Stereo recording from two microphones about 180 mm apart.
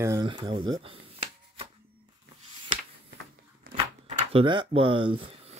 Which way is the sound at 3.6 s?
55° right (ahead or behind).